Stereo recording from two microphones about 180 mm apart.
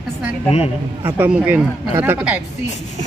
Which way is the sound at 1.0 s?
10° right (ahead or behind).